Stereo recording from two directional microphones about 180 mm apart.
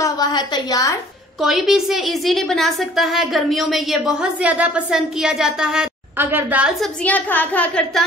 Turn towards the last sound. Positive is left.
turn(degrees=5)  # may be behind; listen again after turning